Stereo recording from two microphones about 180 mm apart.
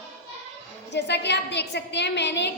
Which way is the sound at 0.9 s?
75° left (ahead or behind).